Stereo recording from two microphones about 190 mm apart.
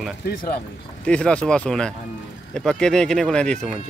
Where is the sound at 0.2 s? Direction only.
55° left (ahead or behind).